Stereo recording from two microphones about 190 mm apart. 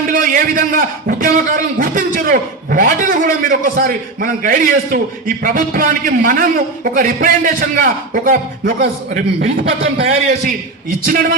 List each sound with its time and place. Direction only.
0.1 s a man's voice: 45° right (ahead or behind)
9.8 s a man's voice: 30° right (ahead or behind)
11.0 s a man's voice: 45° right (ahead or behind)